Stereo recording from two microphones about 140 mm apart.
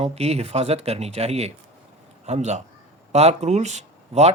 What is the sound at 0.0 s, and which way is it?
Speech, 50° right (ahead or behind).